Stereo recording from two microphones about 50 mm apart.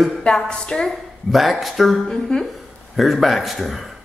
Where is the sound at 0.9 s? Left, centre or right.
Centre.